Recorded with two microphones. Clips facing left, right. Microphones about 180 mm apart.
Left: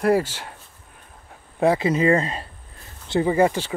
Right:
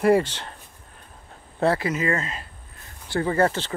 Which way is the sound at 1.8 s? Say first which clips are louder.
Left 6 dB; 30° left (ahead or behind).